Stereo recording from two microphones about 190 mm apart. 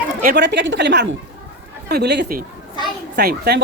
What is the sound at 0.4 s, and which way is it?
A woman's voice, 70° right (ahead or behind).